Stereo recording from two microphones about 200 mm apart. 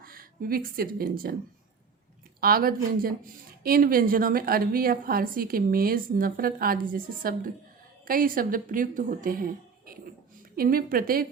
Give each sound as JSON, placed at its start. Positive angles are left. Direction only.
{"t": 0.0, "sound": "a woman's voice", "side_deg": -45}
{"t": 2.4, "sound": "a woman's voice", "side_deg": -45}